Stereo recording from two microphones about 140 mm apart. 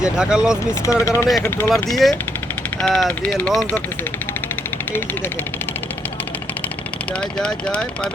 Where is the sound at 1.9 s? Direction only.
Centre (ahead or behind).